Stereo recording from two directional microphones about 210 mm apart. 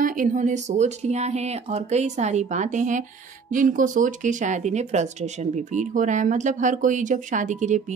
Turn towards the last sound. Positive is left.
turn(degrees=-35)  # may be behind; listen again after turning